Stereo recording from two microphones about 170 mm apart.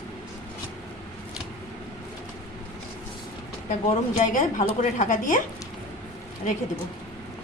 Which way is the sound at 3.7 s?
50° left (ahead or behind).